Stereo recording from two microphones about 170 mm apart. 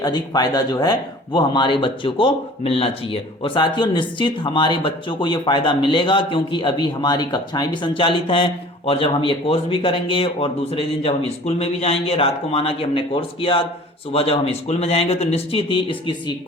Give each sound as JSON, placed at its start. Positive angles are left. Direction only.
{"t": 0.0, "sound": "speech", "side_deg": 25}